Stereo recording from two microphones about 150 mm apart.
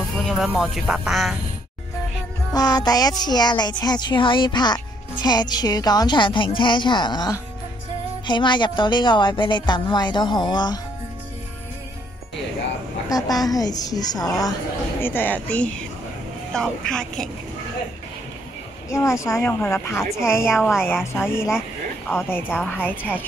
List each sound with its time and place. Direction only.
0.1 s speech: centre (ahead or behind)
2.5 s a woman's voice: 25° left (ahead or behind)
13.1 s speech: 25° left (ahead or behind); by 17.3 s 5° left (ahead or behind)
18.9 s speech: 20° left (ahead or behind)